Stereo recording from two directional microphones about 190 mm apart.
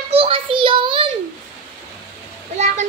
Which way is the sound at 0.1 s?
30° right (ahead or behind).